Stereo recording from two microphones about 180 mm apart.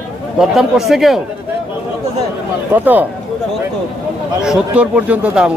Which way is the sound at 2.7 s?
10° right (ahead or behind).